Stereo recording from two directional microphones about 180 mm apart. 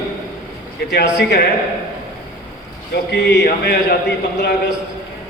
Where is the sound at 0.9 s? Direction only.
70° left (ahead or behind).